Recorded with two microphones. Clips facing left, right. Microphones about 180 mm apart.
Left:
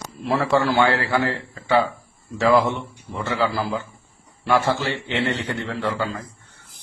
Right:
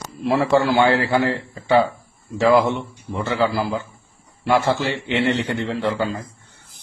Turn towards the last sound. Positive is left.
turn(degrees=-20)  # may be behind; listen again after turning